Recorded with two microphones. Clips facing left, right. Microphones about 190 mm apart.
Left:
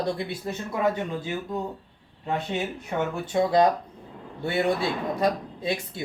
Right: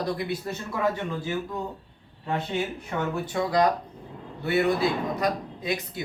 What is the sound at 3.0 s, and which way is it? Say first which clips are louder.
Speech: left 3 dB; 25° left (ahead or behind).